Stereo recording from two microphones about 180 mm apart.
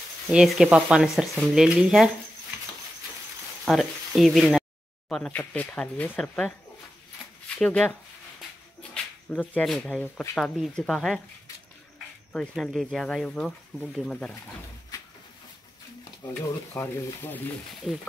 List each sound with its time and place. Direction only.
0.3 s speech: 5° right (ahead or behind)
3.6 s speech: centre (ahead or behind)
8.9 s a sound: 10° left (ahead or behind)
9.6 s speech: 5° left (ahead or behind)
12.3 s speech: centre (ahead or behind)
16.2 s speech: 15° left (ahead or behind)
17.9 s speech: 5° right (ahead or behind)